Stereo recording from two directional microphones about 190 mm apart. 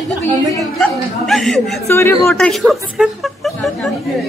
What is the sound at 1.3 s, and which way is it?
Speech, centre (ahead or behind).